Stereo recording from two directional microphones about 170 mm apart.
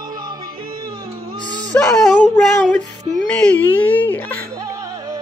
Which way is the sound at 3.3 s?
5° left (ahead or behind).